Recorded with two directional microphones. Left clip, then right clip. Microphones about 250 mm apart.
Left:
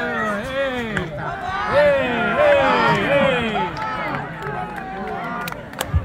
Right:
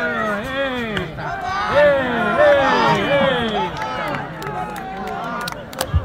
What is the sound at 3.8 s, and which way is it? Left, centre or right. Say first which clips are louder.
Run: right 1 dB; right.